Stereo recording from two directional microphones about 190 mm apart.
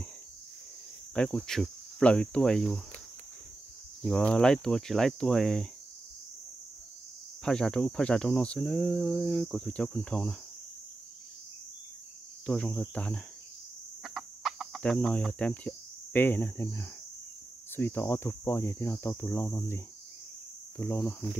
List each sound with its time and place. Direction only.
1.1 s speech: 5° left (ahead or behind)
4.0 s speech: 5° left (ahead or behind)
7.4 s speech: 5° left (ahead or behind)
12.4 s speech: 5° left (ahead or behind)
14.0 s chicken: centre (ahead or behind)
17.7 s cricket: 10° left (ahead or behind)